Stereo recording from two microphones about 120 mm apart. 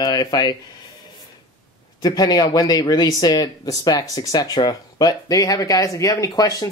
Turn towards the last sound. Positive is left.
turn(degrees=30)  # may be behind; listen again after turning